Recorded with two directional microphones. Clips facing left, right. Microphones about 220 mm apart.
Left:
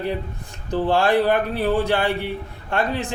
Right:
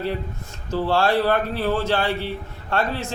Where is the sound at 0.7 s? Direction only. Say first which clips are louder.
Left 2 dB; 15° left (ahead or behind).